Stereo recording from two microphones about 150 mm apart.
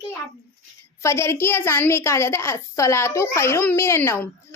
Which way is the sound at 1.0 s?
20° left (ahead or behind).